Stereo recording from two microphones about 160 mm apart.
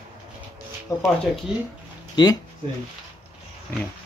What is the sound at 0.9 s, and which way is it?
Speech, 20° left (ahead or behind).